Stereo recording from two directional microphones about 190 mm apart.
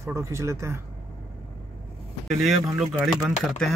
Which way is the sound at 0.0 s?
15° right (ahead or behind).